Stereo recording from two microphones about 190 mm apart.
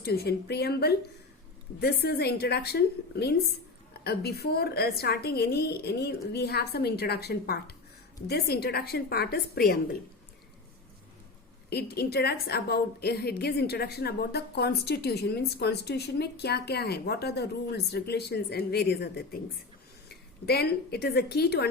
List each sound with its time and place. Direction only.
0.0 s a woman's voice: 55° left (ahead or behind)
11.7 s a woman's voice: 55° left (ahead or behind)
20.4 s a woman's voice: 55° left (ahead or behind)